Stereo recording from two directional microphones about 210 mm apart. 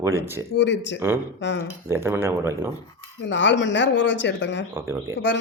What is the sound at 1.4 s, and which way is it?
Speech, 60° left (ahead or behind).